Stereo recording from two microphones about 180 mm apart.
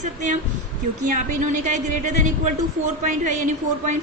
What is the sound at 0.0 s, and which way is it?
A woman's voice, 45° right (ahead or behind).